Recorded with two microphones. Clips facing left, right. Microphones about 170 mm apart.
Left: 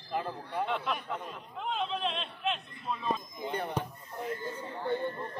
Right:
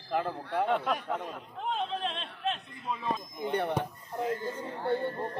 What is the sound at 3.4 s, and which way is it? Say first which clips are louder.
Speech: right 5 dB; 65° right (ahead or behind).